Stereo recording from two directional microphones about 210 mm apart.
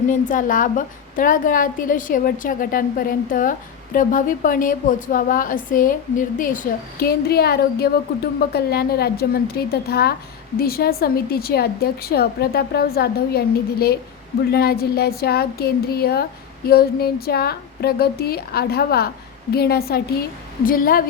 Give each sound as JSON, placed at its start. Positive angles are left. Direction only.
{"t": 0.1, "sound": "a woman's voice", "side_deg": 40}